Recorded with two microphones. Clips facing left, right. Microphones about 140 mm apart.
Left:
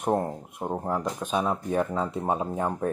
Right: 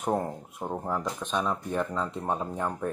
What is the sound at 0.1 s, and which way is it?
Speech, 10° left (ahead or behind).